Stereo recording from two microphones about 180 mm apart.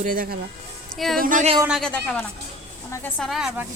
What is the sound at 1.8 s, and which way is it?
A woman's voice, 5° left (ahead or behind).